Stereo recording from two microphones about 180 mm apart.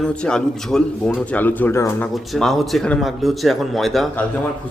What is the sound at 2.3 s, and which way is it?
A man's voice, centre (ahead or behind).